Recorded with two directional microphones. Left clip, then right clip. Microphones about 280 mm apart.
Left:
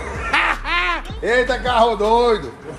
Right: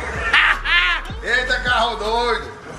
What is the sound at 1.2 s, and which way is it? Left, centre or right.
A man's voice, left.